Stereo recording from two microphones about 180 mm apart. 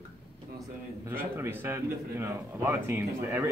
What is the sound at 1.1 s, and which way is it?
Speech, 10° right (ahead or behind).